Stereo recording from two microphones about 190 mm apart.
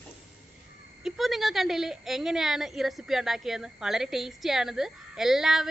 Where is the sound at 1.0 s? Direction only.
Centre (ahead or behind).